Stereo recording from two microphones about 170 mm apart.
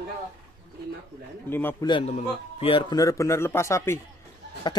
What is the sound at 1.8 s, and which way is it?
Speech, 30° left (ahead or behind).